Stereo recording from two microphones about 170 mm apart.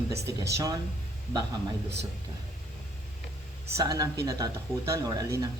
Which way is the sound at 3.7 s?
20° right (ahead or behind).